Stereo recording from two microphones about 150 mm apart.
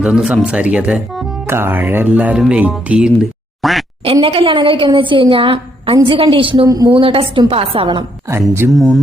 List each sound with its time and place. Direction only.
0.0 s speech: 5° right (ahead or behind)
4.0 s a woman's voice: 35° right (ahead or behind)
6.7 s a woman's voice: 25° right (ahead or behind)
7.0 s a woman's voice: 35° right (ahead or behind)
8.3 s speech: 15° right (ahead or behind)
8.7 s speech: centre (ahead or behind)